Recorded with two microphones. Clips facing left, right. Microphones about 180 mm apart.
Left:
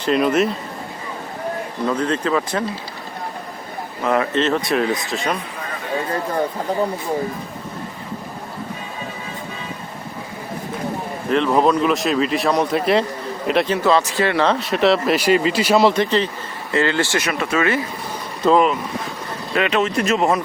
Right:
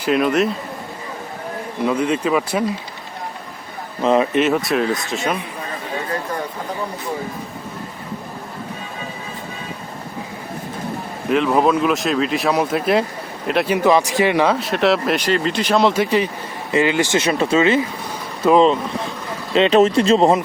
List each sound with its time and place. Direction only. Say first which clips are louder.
0.0 s speech: even; 5° right (ahead or behind)
1.8 s speech: right 2 dB; 10° right (ahead or behind)
4.0 s speech: right 3 dB; 20° right (ahead or behind); by 5.4 s centre (ahead or behind)
11.3 s speech: even; 5° right (ahead or behind)
13.7 s speech: right 2 dB; 15° right (ahead or behind)
14.5 s speech: even; centre (ahead or behind); by 17.7 s 25° right (ahead or behind)
18.4 s speech: right 1 dB; 5° right (ahead or behind)
19.5 s speech: right 6 dB; 30° right (ahead or behind)